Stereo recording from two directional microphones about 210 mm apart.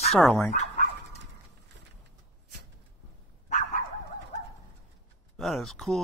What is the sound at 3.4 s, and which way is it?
Dog, 35° left (ahead or behind).